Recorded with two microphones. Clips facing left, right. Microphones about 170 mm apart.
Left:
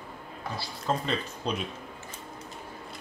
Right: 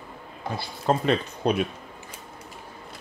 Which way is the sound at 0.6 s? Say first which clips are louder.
Right 6 dB; 60° right (ahead or behind).